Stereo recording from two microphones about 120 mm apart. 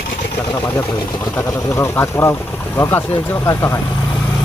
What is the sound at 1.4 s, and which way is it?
Speech, 25° left (ahead or behind).